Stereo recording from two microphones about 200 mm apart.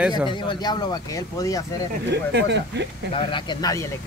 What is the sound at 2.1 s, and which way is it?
Speech, 60° right (ahead or behind).